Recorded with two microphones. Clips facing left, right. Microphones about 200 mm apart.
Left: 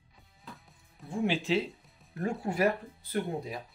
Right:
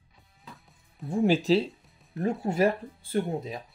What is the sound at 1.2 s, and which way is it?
Speech, 35° right (ahead or behind).